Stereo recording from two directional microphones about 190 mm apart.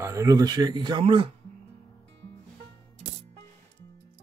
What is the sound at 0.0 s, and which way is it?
Speech, 15° right (ahead or behind).